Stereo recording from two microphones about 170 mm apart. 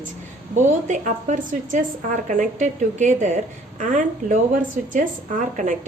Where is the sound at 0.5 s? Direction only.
45° right (ahead or behind).